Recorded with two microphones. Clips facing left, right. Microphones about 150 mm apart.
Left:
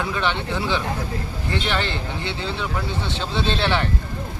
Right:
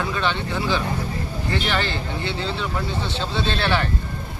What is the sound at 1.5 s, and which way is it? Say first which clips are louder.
Speech: even; 20° left (ahead or behind).